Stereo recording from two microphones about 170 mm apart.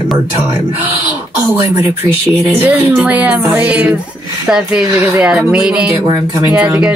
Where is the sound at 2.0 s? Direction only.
10° right (ahead or behind).